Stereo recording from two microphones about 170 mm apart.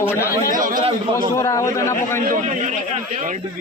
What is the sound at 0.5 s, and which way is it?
Speech, 55° right (ahead or behind).